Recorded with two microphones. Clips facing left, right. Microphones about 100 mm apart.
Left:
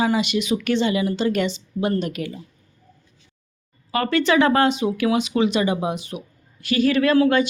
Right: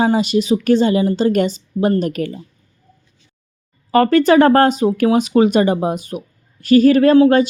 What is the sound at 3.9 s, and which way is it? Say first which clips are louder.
A woman's voice: right 8 dB; 40° right (ahead or behind).